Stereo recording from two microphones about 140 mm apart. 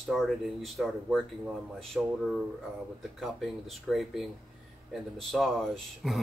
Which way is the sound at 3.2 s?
Centre (ahead or behind).